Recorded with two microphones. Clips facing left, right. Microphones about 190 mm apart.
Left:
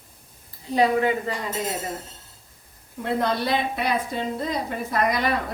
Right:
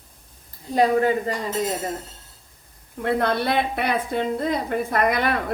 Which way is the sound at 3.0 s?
60° right (ahead or behind).